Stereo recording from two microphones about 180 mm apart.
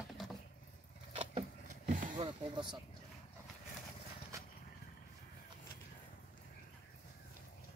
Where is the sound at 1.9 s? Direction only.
45° right (ahead or behind).